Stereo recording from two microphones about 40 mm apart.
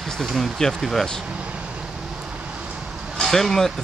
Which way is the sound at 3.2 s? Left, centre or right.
Centre.